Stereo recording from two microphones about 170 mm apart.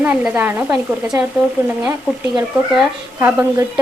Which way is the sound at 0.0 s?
10° right (ahead or behind).